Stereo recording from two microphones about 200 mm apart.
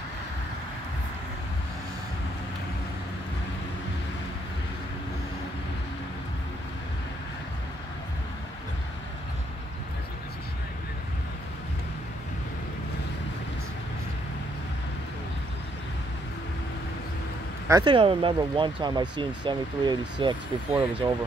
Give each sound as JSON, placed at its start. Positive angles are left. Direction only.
{"t": 17.6, "sound": "speech", "side_deg": -20}